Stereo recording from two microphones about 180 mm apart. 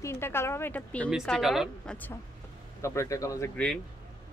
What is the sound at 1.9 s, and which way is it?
Speech, 10° left (ahead or behind).